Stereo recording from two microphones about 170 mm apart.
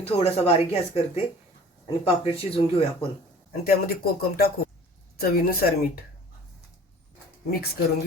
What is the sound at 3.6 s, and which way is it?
Speech, 65° left (ahead or behind).